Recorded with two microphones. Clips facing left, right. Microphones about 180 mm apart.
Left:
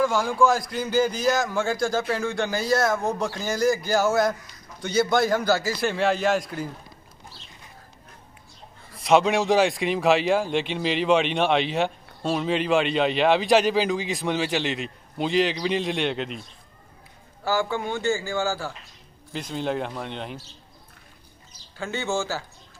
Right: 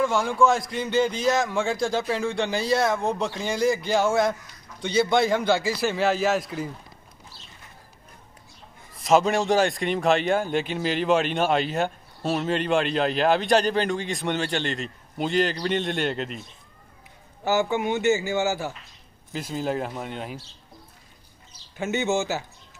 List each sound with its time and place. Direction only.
0.0 s a man's voice: 5° left (ahead or behind)
8.9 s a man's voice: centre (ahead or behind)
17.5 s a man's voice: 20° right (ahead or behind)
19.3 s a man's voice: 5° right (ahead or behind)
21.7 s a man's voice: 20° right (ahead or behind)